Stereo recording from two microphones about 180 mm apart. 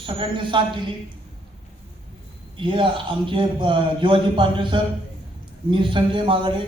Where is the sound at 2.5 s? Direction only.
30° right (ahead or behind).